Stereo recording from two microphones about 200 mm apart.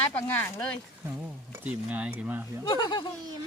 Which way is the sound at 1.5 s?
10° right (ahead or behind).